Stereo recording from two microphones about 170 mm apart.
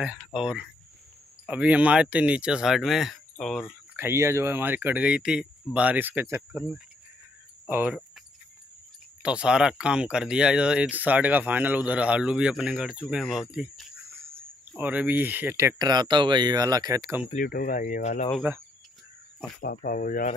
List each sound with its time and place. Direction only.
0.0 s speech: 5° right (ahead or behind)
9.2 s speech: 5° right (ahead or behind)
17.3 s speech: 55° left (ahead or behind)
19.6 s speech: 55° left (ahead or behind)